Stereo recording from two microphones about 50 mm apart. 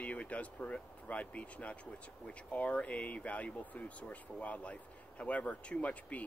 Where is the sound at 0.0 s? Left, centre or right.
Left.